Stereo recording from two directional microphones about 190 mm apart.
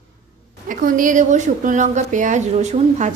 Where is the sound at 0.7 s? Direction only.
45° right (ahead or behind).